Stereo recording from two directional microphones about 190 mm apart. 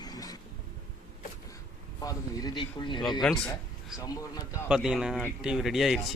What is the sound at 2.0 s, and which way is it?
Speech, 20° left (ahead or behind).